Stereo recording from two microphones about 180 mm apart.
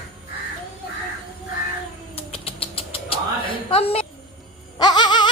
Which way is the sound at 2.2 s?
30° left (ahead or behind).